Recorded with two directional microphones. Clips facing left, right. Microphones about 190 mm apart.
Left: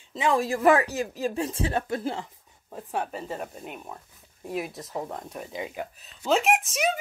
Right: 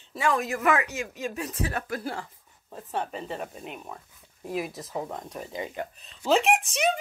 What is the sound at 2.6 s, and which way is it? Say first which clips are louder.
Speech: left 1 dB; 10° left (ahead or behind).